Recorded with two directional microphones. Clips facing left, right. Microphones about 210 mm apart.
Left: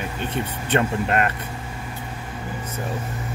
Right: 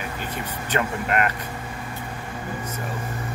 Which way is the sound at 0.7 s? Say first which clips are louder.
Left 3 dB; 25° left (ahead or behind).